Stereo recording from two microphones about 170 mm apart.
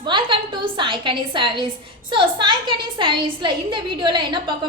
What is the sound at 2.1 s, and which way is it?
A woman's voice, 30° right (ahead or behind).